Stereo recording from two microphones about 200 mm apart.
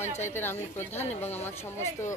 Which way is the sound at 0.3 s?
10° left (ahead or behind).